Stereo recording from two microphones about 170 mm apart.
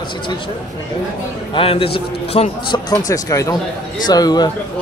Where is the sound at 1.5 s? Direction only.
35° left (ahead or behind).